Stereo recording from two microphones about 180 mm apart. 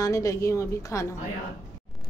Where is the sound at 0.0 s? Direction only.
15° left (ahead or behind).